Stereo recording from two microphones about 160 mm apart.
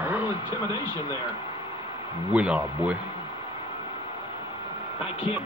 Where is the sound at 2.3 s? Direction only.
5° right (ahead or behind).